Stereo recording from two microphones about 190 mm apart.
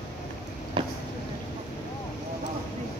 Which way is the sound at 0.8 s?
25° right (ahead or behind).